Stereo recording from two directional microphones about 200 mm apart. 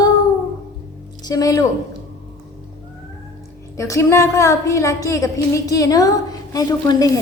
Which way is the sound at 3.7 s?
15° left (ahead or behind).